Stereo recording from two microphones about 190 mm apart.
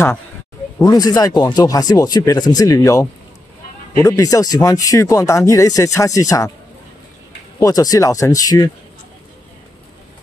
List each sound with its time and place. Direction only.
0.8 s speech: 20° left (ahead or behind)
7.6 s speech: 20° left (ahead or behind)